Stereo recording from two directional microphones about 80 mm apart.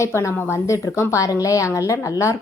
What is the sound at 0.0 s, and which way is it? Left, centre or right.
A woman's voice, left.